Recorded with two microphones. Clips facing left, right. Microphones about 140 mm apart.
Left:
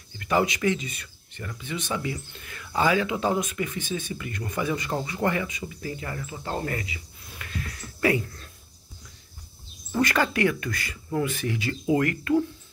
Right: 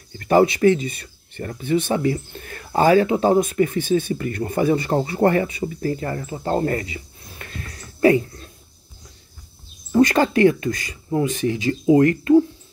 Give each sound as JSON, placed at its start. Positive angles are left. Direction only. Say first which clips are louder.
{"t": 0.2, "sound": "speech", "louder": "right 9 dB", "side_deg": -40}
{"t": 1.3, "sound": "speech", "louder": "right 13 dB", "side_deg": -45}
{"t": 9.9, "sound": "speech", "louder": "right 8 dB", "side_deg": -30}